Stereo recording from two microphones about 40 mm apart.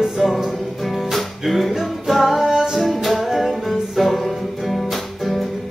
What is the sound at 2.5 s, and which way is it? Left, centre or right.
Music, centre.